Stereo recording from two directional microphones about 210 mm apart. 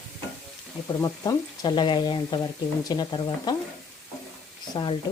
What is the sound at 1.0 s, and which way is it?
Speech, 20° left (ahead or behind).